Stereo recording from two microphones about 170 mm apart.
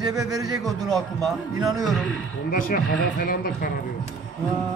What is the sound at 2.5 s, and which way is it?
Speech, 55° left (ahead or behind).